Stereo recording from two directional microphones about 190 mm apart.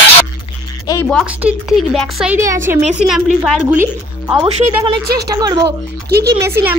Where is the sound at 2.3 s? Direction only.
15° right (ahead or behind).